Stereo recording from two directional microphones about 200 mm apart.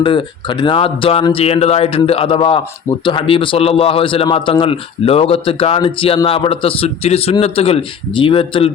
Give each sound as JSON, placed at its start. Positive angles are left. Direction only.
{"t": 0.0, "sound": "a man's voice", "side_deg": 25}